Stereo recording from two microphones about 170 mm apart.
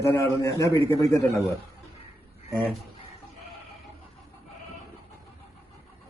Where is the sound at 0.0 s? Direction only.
20° left (ahead or behind).